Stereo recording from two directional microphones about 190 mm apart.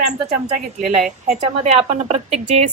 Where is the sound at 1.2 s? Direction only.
35° right (ahead or behind).